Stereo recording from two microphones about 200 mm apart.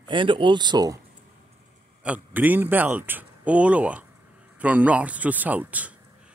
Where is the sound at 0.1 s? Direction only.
25° right (ahead or behind).